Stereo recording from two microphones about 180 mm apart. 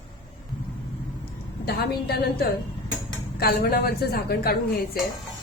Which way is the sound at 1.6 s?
60° left (ahead or behind).